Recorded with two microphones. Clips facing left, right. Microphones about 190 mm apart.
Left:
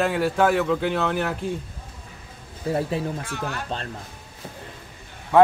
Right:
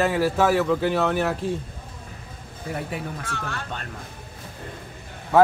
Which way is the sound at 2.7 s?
30° left (ahead or behind).